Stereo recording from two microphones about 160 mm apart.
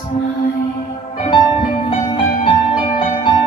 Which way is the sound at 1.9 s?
45° left (ahead or behind).